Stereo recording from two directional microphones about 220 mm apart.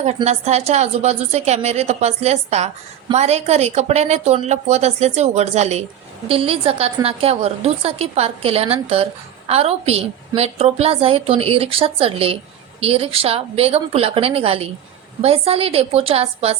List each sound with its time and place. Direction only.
0.0 s a woman's voice: 30° right (ahead or behind)